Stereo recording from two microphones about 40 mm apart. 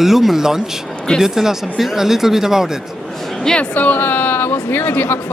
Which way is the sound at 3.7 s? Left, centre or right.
Left.